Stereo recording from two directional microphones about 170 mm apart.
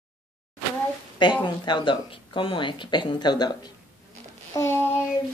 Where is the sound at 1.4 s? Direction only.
25° left (ahead or behind).